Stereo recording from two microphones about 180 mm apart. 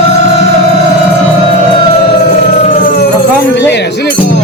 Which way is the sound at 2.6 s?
50° left (ahead or behind).